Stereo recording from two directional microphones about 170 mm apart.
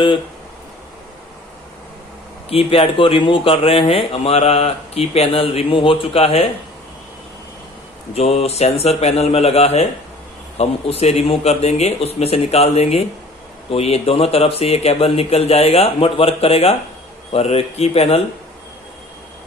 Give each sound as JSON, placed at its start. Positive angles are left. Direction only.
{"t": 2.5, "sound": "speech", "side_deg": 30}
{"t": 8.1, "sound": "speech", "side_deg": 35}